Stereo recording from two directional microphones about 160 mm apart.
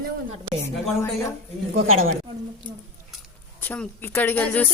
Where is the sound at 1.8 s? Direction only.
40° right (ahead or behind).